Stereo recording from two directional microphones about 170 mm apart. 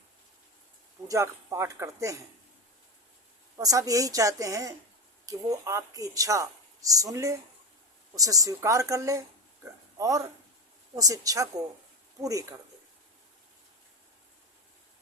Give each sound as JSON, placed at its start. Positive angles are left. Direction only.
{"t": 1.0, "sound": "speech", "side_deg": -20}
{"t": 3.6, "sound": "speech", "side_deg": -20}